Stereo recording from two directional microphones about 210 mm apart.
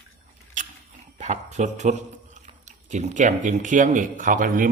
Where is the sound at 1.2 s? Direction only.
35° right (ahead or behind).